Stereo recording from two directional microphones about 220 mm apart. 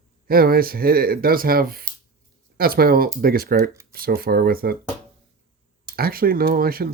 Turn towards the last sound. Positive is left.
turn(degrees=-40)  # may be behind; listen again after turning